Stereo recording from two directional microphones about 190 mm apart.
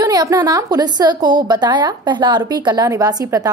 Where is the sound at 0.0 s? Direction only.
20° right (ahead or behind).